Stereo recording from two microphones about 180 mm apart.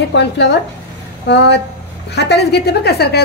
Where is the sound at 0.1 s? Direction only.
70° left (ahead or behind).